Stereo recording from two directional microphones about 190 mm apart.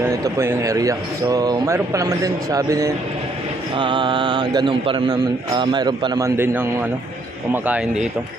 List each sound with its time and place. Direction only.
0.0 s speech: 15° right (ahead or behind)
3.8 s mantra: 25° right (ahead or behind)
7.5 s speech: 10° right (ahead or behind)